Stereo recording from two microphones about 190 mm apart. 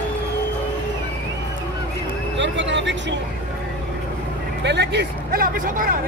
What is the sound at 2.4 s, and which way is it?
Vehicle, 70° right (ahead or behind).